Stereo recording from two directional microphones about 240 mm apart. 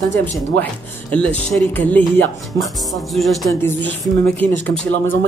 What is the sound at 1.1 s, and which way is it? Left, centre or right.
Speech, centre.